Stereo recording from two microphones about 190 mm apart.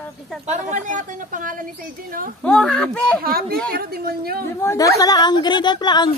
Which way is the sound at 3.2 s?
50° right (ahead or behind).